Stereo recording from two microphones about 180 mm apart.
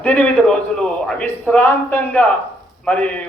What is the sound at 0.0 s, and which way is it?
A man's voice, 5° left (ahead or behind).